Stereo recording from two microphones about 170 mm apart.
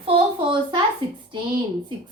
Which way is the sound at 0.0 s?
30° right (ahead or behind).